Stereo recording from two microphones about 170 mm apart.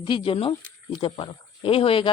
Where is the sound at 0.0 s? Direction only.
30° left (ahead or behind).